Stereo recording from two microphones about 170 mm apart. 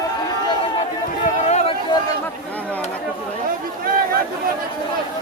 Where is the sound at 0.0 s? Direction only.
25° left (ahead or behind).